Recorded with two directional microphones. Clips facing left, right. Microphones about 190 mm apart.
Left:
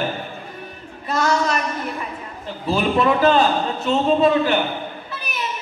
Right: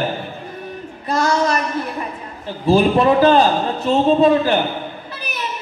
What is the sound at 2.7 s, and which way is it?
A man's voice, 35° right (ahead or behind).